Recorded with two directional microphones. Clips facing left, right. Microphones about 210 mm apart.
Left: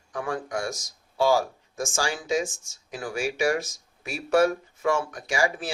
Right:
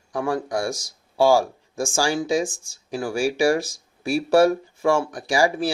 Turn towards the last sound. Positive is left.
turn(degrees=-35)  # may be behind; listen again after turning